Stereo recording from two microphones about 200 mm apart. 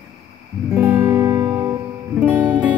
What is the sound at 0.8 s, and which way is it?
Music, 20° right (ahead or behind).